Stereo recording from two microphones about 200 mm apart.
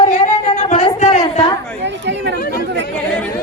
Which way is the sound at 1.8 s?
60° right (ahead or behind).